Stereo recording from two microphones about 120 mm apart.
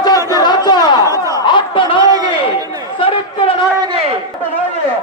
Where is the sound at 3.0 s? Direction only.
50° left (ahead or behind).